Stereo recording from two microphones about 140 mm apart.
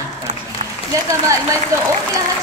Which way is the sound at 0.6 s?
50° right (ahead or behind).